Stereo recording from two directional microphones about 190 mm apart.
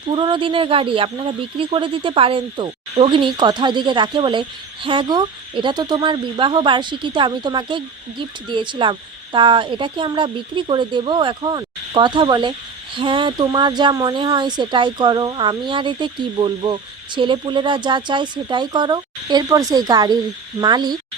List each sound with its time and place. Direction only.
0.1 s a woman's voice: 25° right (ahead or behind)